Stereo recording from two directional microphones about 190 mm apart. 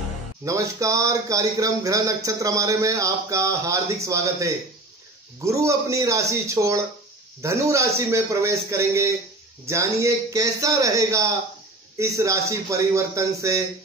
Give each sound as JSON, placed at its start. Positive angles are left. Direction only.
{"t": 0.5, "sound": "speech", "side_deg": -15}